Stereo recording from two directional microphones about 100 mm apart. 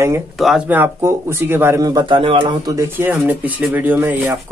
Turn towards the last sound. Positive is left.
turn(degrees=-20)  # may be behind; listen again after turning